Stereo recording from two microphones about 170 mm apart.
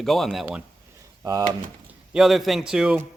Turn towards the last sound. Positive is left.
turn(degrees=-5)  # may be behind; listen again after turning